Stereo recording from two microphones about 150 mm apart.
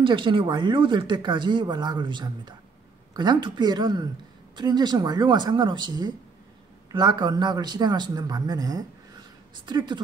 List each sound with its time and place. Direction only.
0.0 s a man's voice: 35° right (ahead or behind)